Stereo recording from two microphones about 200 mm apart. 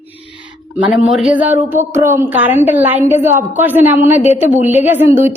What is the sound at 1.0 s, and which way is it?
A woman's voice, 5° right (ahead or behind).